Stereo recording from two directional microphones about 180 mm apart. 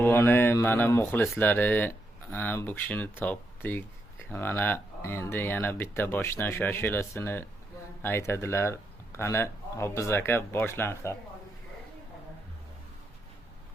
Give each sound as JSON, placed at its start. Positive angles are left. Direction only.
{"t": 0.0, "sound": "speech", "side_deg": 10}